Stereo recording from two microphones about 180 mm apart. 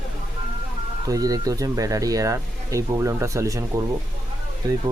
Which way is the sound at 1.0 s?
20° right (ahead or behind).